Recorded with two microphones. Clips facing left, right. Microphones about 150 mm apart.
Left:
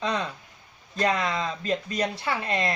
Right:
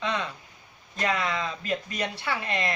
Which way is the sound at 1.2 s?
30° left (ahead or behind).